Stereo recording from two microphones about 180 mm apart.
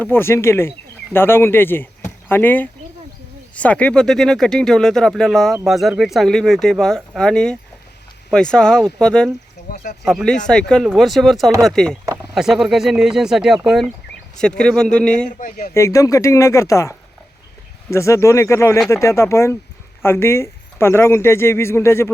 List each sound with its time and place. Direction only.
0.0 s speech: 10° left (ahead or behind)
15.3 s speech: 45° left (ahead or behind)
15.7 s speech: 15° left (ahead or behind)
17.9 s speech: 15° left (ahead or behind)